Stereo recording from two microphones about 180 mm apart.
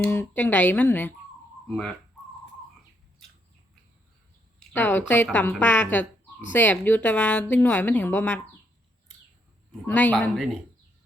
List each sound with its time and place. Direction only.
0.0 s a woman's voice: 10° left (ahead or behind)
4.7 s a woman's voice: 10° left (ahead or behind)
9.8 s a woman's voice: 10° left (ahead or behind)